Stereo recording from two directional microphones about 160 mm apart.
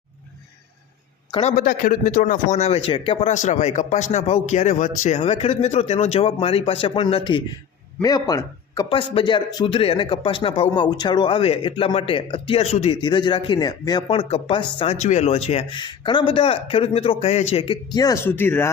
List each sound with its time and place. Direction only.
1.3 s a man's voice: 45° left (ahead or behind)
8.0 s a man's voice: 25° left (ahead or behind); by 17.7 s 40° left (ahead or behind)
17.9 s speech: 20° left (ahead or behind)